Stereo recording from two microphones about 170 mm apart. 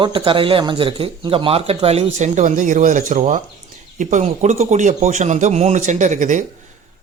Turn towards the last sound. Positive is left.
turn(degrees=-45)  # may be behind; listen again after turning